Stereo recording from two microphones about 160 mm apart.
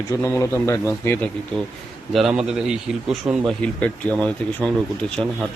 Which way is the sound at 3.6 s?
10° left (ahead or behind).